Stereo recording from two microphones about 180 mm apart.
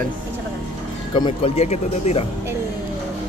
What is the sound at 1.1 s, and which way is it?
Speech, 30° left (ahead or behind).